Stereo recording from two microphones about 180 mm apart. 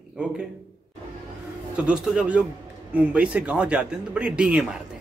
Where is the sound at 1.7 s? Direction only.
5° right (ahead or behind).